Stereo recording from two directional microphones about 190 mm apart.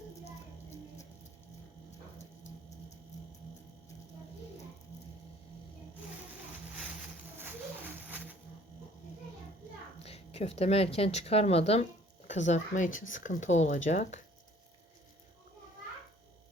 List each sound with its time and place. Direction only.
10.0 s speech: 35° left (ahead or behind)